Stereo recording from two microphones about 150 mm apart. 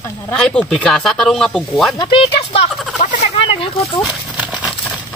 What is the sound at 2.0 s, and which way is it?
Speech, 35° left (ahead or behind).